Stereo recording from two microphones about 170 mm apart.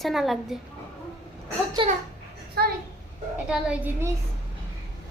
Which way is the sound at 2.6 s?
65° right (ahead or behind).